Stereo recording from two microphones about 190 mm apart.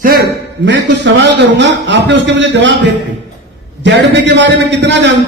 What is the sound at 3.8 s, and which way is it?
A man's voice, 65° right (ahead or behind).